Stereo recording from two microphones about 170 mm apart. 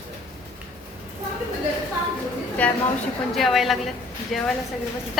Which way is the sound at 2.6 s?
10° left (ahead or behind).